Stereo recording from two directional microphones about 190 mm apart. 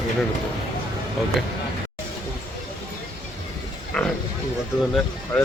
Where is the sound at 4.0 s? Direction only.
5° left (ahead or behind).